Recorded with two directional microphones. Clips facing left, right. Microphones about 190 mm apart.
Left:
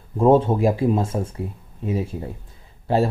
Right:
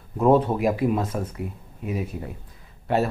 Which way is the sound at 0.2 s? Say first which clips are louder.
Left 3 dB; 25° left (ahead or behind).